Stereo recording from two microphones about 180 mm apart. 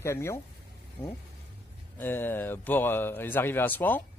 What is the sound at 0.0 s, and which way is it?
A man's voice, 15° left (ahead or behind).